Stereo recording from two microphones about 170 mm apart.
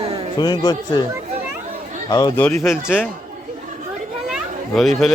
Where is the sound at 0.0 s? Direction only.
35° right (ahead or behind).